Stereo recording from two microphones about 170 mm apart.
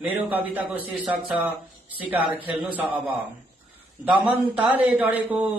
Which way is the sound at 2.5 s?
10° right (ahead or behind).